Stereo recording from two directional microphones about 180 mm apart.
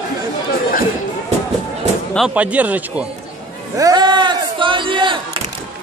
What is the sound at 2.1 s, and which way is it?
Speech, 5° right (ahead or behind).